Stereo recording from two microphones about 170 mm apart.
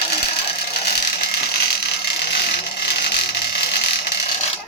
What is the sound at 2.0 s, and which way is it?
Vehicle, 75° left (ahead or behind).